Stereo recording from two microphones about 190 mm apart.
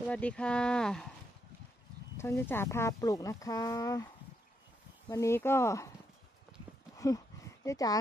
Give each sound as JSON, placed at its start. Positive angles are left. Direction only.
{"t": 0.0, "sound": "speech", "side_deg": 5}
{"t": 2.1, "sound": "speech", "side_deg": 15}
{"t": 7.0, "sound": "speech", "side_deg": 15}